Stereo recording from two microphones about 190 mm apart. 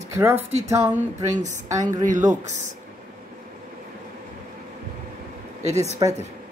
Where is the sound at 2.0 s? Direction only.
40° right (ahead or behind).